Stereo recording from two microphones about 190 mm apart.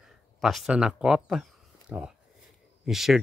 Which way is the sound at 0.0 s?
Centre (ahead or behind).